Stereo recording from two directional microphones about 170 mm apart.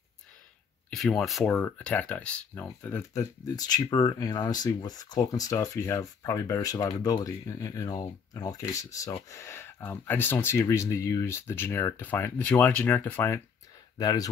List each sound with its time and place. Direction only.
0.8 s speech: 5° left (ahead or behind); by 14.3 s 20° left (ahead or behind)